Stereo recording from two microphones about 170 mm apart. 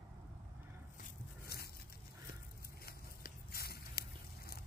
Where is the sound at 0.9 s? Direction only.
60° left (ahead or behind).